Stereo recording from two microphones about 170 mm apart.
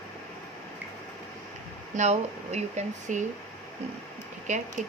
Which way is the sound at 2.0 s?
40° right (ahead or behind).